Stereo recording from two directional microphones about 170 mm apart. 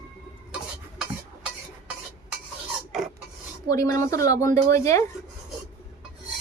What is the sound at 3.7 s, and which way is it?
Speech, 20° left (ahead or behind).